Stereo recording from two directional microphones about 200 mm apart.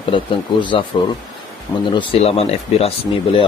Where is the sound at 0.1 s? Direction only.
25° left (ahead or behind).